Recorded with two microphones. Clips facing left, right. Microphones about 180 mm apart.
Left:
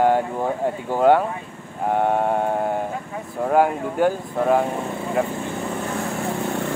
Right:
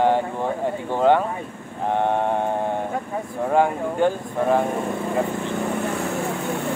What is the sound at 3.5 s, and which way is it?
Speech, 5° left (ahead or behind).